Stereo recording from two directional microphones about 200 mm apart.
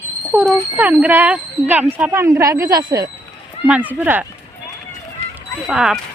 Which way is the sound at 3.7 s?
5° right (ahead or behind).